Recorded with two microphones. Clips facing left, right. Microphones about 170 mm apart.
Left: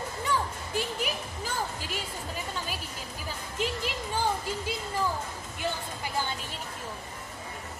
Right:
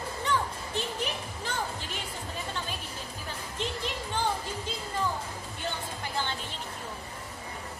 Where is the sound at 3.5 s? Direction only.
10° left (ahead or behind).